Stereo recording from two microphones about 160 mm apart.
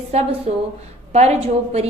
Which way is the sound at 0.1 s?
40° right (ahead or behind).